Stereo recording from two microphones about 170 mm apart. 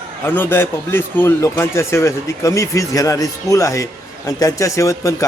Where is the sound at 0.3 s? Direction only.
10° left (ahead or behind).